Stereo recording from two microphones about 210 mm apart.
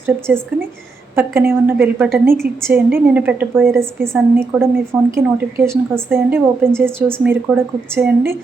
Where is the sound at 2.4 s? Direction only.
45° right (ahead or behind).